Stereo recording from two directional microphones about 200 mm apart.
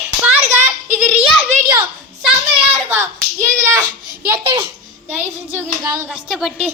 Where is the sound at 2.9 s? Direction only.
10° right (ahead or behind).